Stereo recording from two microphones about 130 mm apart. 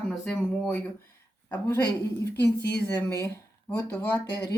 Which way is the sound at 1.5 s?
15° left (ahead or behind).